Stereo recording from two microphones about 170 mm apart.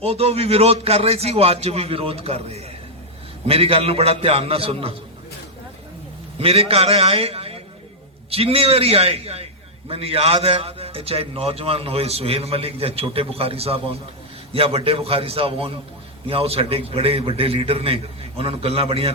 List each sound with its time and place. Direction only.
0.0 s a man's voice: 35° right (ahead or behind)
6.4 s a man's voice: 35° right (ahead or behind)